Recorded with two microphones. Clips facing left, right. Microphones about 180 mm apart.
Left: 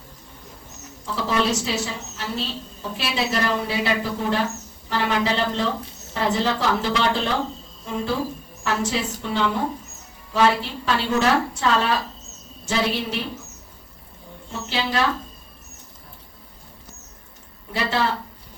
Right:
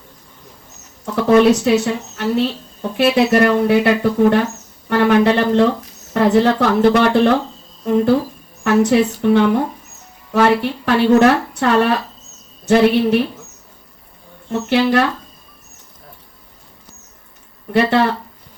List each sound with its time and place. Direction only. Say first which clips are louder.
1.0 s a woman's voice: right 12 dB; 60° right (ahead or behind)
14.7 s a woman's voice: right 10 dB; 55° right (ahead or behind)
17.7 s a woman's voice: right 9 dB; 60° right (ahead or behind)